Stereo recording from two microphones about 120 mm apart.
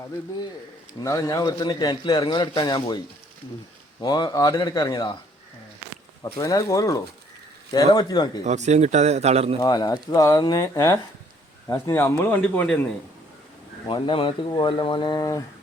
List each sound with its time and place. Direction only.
1.0 s a man's voice: 25° left (ahead or behind)
4.0 s a man's voice: 35° left (ahead or behind)
6.3 s a man's voice: 30° left (ahead or behind)
8.4 s speech: 75° right (ahead or behind)
9.6 s a man's voice: 35° left (ahead or behind); by 12.8 s 10° left (ahead or behind)
13.8 s a man's voice: 45° left (ahead or behind); by 15.4 s 30° left (ahead or behind)